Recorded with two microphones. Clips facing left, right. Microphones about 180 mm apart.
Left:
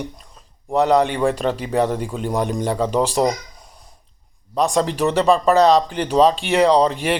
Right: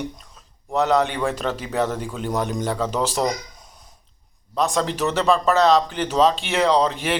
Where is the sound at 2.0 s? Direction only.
Centre (ahead or behind).